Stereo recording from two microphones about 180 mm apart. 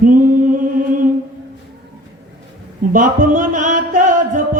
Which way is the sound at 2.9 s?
45° right (ahead or behind).